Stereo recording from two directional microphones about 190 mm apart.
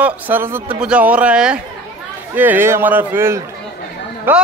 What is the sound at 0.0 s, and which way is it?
Speech, 10° right (ahead or behind).